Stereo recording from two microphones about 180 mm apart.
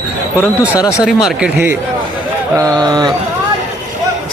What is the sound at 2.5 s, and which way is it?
Speech, 20° right (ahead or behind).